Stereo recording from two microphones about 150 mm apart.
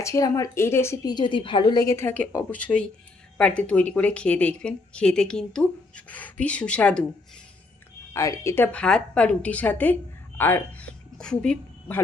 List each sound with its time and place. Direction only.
0.0 s a woman's voice: 20° left (ahead or behind)
1.1 s a woman's voice: 35° left (ahead or behind); by 7.0 s 10° left (ahead or behind)
8.1 s a woman's voice: 20° left (ahead or behind)